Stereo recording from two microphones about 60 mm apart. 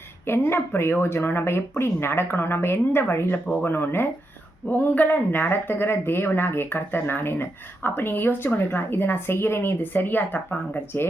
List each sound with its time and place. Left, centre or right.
0.3 s speech: left
4.7 s speech: left